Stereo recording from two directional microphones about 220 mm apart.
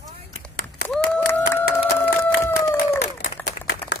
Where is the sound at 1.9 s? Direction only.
10° left (ahead or behind).